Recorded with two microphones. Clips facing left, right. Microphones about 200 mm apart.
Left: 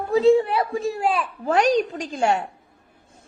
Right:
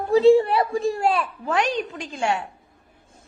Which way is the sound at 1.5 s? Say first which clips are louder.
Left 6 dB; 40° left (ahead or behind).